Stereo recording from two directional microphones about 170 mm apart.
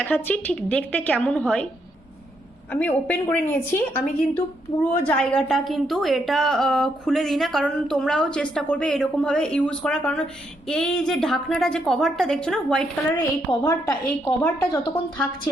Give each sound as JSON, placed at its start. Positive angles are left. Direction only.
{"t": 0.0, "sound": "a woman's voice", "side_deg": 10}
{"t": 2.7, "sound": "a woman's voice", "side_deg": 10}
{"t": 13.6, "sound": "a woman's voice", "side_deg": 20}